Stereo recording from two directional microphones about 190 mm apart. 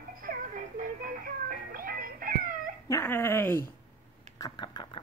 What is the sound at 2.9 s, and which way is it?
Speech, 10° left (ahead or behind).